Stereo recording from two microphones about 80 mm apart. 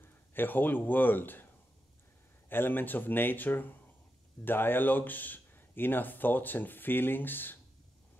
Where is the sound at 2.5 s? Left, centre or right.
Left.